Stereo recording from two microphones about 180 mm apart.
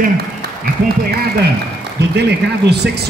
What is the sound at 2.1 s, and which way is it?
Speech, 70° right (ahead or behind).